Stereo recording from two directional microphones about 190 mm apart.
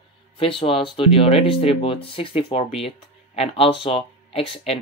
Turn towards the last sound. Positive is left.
turn(degrees=30)  # may be behind; listen again after turning